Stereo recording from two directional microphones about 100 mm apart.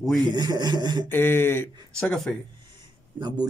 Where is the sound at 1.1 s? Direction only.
20° left (ahead or behind).